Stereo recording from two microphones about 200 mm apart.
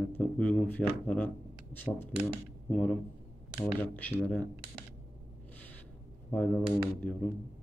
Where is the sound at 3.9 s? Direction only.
10° left (ahead or behind).